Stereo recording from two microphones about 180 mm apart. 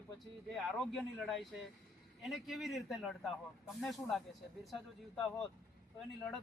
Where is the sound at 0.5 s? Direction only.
Centre (ahead or behind).